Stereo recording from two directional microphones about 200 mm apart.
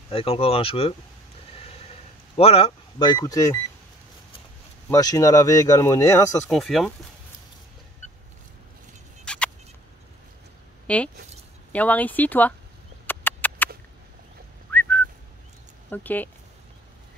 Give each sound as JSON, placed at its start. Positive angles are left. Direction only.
{"t": 0.1, "sound": "speech", "side_deg": 30}
{"t": 2.3, "sound": "speech", "side_deg": 30}
{"t": 4.8, "sound": "speech", "side_deg": 15}
{"t": 6.5, "sound": "speech", "side_deg": 0}
{"t": 9.2, "sound": "a sound", "side_deg": 5}
{"t": 10.9, "sound": "speech", "side_deg": 5}
{"t": 13.0, "sound": "a sound", "side_deg": 10}
{"t": 14.7, "sound": "whistling", "side_deg": 10}
{"t": 15.9, "sound": "speech", "side_deg": 10}